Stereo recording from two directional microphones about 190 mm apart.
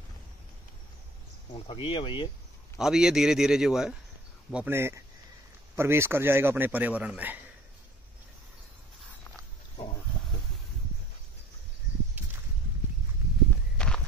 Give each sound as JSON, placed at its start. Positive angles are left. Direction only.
{"t": 1.5, "sound": "speech", "side_deg": 25}
{"t": 2.8, "sound": "a man's voice", "side_deg": -5}
{"t": 13.7, "sound": "walk", "side_deg": 5}